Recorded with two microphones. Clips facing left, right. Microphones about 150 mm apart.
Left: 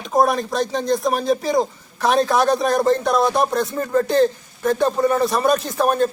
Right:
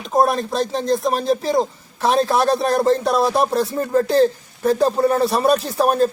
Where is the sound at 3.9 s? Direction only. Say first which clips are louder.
Right 1 dB; 35° right (ahead or behind).